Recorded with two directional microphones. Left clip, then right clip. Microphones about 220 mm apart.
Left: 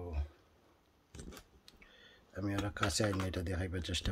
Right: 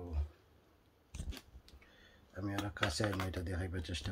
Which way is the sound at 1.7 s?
45° left (ahead or behind).